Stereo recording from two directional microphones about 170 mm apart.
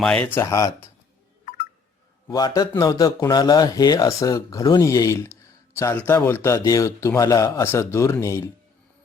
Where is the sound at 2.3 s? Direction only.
25° left (ahead or behind).